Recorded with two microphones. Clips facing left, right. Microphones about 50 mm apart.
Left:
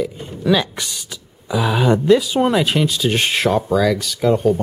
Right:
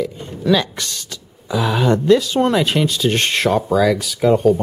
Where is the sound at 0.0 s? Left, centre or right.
Centre.